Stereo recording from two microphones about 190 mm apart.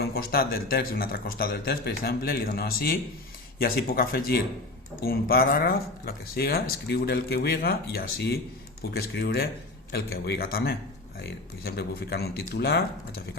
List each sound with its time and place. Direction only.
0.0 s speech: 55° left (ahead or behind)